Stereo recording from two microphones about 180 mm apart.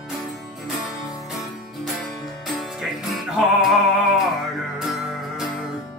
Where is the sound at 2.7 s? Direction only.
Centre (ahead or behind).